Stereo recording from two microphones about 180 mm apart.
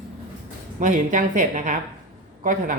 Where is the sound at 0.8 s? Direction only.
45° right (ahead or behind).